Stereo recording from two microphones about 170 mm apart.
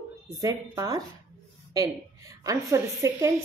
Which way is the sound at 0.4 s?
20° right (ahead or behind).